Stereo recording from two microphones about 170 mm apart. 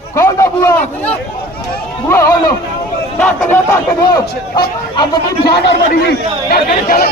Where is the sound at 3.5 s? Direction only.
15° left (ahead or behind).